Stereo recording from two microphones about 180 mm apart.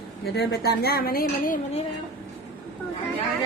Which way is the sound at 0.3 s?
60° left (ahead or behind).